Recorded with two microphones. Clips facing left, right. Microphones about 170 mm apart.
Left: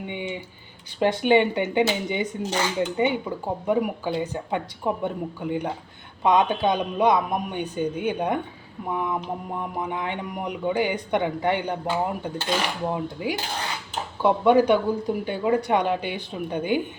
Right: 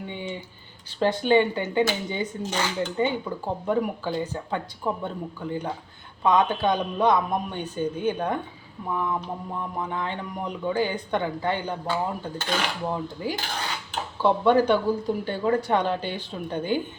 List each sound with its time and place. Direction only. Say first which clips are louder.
0.1 s speech: left 2 dB; 15° left (ahead or behind)